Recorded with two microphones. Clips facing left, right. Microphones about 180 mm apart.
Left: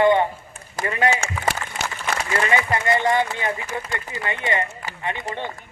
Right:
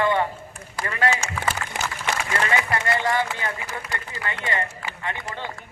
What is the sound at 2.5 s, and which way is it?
A man's voice, 20° left (ahead or behind).